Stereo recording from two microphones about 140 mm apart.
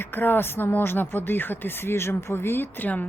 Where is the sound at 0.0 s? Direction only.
15° left (ahead or behind).